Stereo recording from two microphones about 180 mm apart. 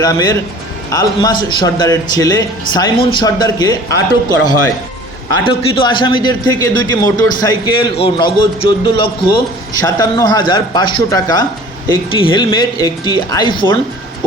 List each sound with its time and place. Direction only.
0.0 s a man's voice: 20° left (ahead or behind)